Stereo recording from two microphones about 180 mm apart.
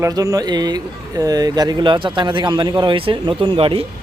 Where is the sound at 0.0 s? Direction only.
20° right (ahead or behind).